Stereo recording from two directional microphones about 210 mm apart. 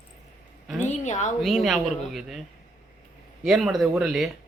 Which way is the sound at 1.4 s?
Centre (ahead or behind).